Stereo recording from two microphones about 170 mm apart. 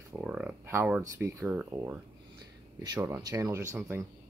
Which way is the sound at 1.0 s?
15° right (ahead or behind).